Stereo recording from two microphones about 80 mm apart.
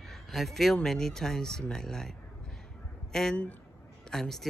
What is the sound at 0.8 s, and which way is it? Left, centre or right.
Speech, centre.